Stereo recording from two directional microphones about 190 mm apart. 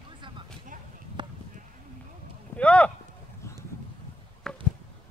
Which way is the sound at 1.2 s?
25° right (ahead or behind).